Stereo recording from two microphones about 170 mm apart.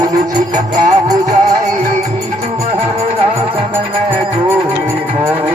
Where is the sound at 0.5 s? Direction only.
45° right (ahead or behind).